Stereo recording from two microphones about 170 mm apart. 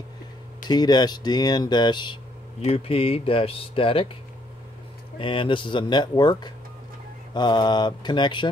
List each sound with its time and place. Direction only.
0.7 s speech: 25° left (ahead or behind)
5.2 s speech: 30° left (ahead or behind)